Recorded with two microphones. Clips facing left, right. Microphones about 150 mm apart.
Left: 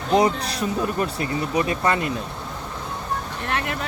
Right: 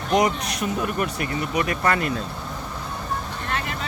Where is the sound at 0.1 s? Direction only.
30° left (ahead or behind).